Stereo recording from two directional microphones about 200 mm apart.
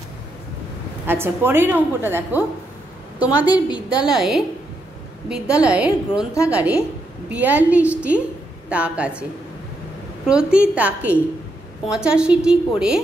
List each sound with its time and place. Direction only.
1.0 s a woman's voice: 10° right (ahead or behind)
3.6 s a woman's voice: 25° left (ahead or behind)
4.0 s a woman's voice: centre (ahead or behind)
10.2 s a woman's voice: 5° right (ahead or behind)